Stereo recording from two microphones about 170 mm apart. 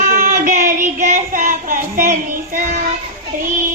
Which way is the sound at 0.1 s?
55° right (ahead or behind).